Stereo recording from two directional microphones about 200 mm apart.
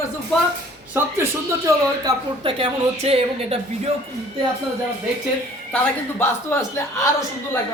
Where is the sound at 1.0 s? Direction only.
10° right (ahead or behind).